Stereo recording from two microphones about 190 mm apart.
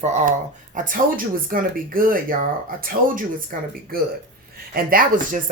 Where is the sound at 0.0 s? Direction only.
40° right (ahead or behind).